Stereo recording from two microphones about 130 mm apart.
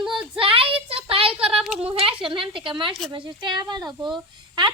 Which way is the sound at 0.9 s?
45° right (ahead or behind).